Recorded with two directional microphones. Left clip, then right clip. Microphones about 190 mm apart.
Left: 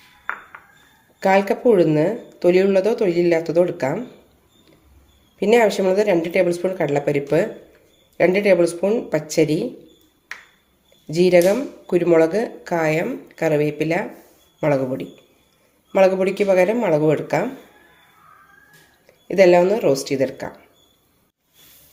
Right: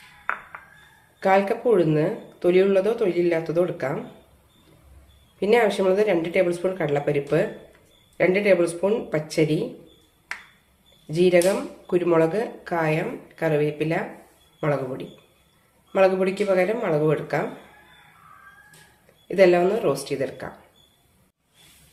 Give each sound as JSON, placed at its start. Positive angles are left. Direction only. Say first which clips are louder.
{"t": 1.2, "sound": "speech", "louder": "left 3 dB", "side_deg": 40}
{"t": 5.4, "sound": "speech", "louder": "left 4 dB", "side_deg": 35}
{"t": 11.1, "sound": "speech", "louder": "left 4 dB", "side_deg": 30}
{"t": 19.3, "sound": "speech", "louder": "left 4 dB", "side_deg": 35}